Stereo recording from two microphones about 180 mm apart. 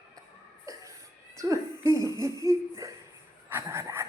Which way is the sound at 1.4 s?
15° right (ahead or behind).